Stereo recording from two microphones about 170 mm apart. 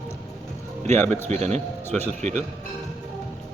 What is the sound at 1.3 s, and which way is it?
Speech, 40° right (ahead or behind).